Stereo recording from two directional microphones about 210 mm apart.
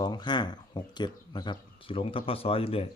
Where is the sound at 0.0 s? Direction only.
20° left (ahead or behind).